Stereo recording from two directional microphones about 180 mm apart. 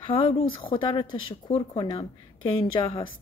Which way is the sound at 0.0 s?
30° left (ahead or behind).